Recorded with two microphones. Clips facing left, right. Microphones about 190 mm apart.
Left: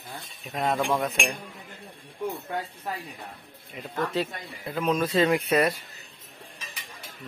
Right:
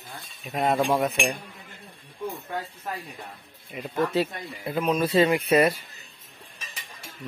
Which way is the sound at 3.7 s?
10° right (ahead or behind).